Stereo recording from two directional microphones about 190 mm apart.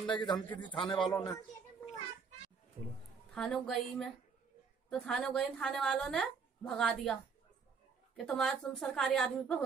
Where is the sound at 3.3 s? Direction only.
Centre (ahead or behind).